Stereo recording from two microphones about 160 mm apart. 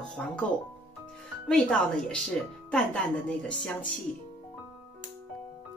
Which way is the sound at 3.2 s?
5° left (ahead or behind).